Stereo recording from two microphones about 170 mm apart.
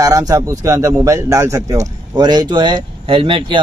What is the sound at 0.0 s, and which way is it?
Speech, 20° right (ahead or behind).